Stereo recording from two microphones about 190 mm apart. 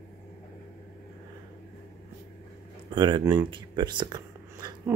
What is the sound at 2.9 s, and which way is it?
Speech, 25° right (ahead or behind).